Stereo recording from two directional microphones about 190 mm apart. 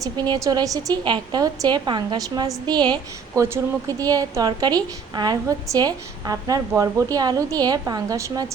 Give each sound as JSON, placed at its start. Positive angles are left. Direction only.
{"t": 0.0, "sound": "a woman's voice", "side_deg": -20}